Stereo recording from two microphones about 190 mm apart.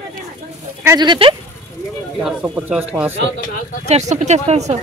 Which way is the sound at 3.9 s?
40° right (ahead or behind).